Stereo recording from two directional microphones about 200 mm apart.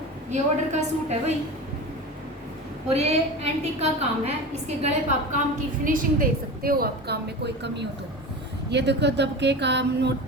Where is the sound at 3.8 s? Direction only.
30° right (ahead or behind).